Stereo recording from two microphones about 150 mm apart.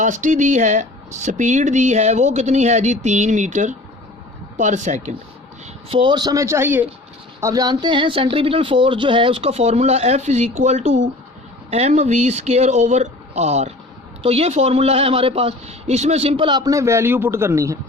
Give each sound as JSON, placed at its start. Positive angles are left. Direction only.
{"t": 0.0, "sound": "speech", "side_deg": -55}
{"t": 5.9, "sound": "a man's voice", "side_deg": -30}
{"t": 7.4, "sound": "speech", "side_deg": -25}